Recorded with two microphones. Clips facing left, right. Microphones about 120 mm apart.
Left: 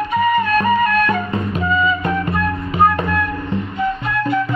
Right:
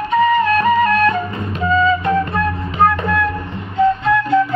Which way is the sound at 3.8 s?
25° right (ahead or behind).